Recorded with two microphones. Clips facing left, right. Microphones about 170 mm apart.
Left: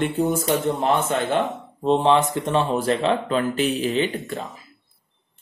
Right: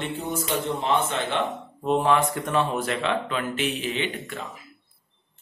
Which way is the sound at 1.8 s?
25° left (ahead or behind).